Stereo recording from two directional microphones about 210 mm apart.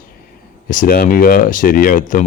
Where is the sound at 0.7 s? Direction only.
40° left (ahead or behind).